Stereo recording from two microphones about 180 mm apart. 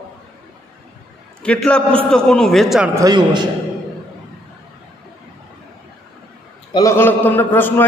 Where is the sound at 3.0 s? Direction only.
25° right (ahead or behind).